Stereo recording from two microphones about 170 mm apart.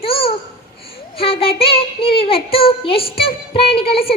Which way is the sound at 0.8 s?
35° left (ahead or behind).